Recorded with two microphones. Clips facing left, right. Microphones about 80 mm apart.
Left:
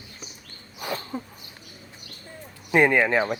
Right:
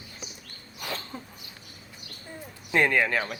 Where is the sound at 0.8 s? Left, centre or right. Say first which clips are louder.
Left 5 dB; centre.